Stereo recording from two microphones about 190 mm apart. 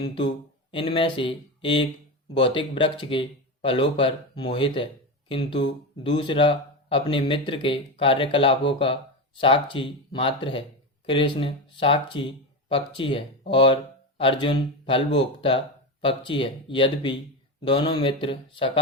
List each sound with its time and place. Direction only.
0.7 s speech: 25° left (ahead or behind)
6.0 s speech: 25° left (ahead or behind)